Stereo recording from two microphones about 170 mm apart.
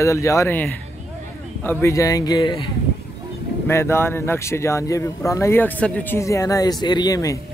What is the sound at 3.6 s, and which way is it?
Speech, 15° left (ahead or behind).